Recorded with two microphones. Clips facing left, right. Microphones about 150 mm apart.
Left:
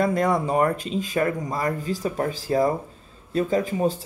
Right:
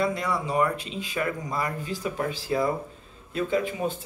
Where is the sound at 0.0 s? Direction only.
45° left (ahead or behind).